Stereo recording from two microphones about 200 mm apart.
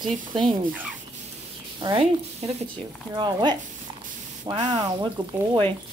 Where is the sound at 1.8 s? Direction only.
25° right (ahead or behind).